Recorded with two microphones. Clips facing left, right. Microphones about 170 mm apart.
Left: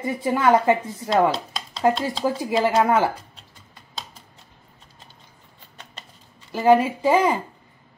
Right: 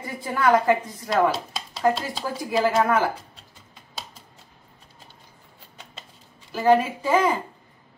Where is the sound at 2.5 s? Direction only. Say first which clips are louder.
Left 1 dB; 20° left (ahead or behind).